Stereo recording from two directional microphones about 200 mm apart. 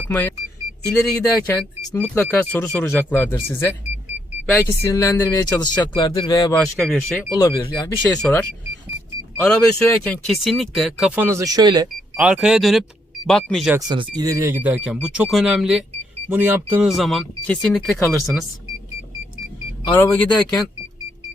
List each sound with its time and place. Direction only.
0.1 s speech: 10° left (ahead or behind)
6.0 s speech: 20° left (ahead or behind)
7.4 s speech: 20° left (ahead or behind)
8.1 s speech: 5° left (ahead or behind); by 11.9 s 20° right (ahead or behind)
12.1 s speech: 5° right (ahead or behind)
13.7 s speech: 20° right (ahead or behind); by 18.4 s centre (ahead or behind)
20.0 s speech: 5° left (ahead or behind)